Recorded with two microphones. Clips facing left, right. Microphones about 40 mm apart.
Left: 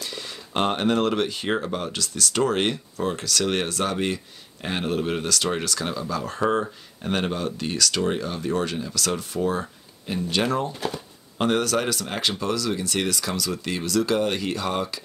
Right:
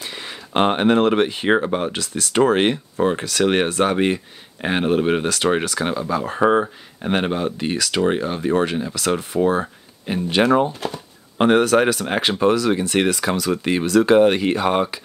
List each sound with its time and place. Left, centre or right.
0.0 s speech: right